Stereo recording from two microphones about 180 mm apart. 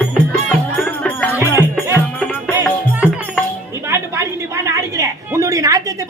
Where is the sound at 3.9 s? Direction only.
15° right (ahead or behind).